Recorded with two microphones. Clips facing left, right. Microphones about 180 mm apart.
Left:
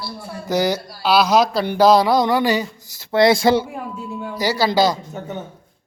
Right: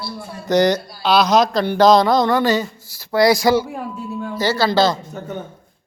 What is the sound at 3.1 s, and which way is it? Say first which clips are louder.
Speech: even; 25° left (ahead or behind).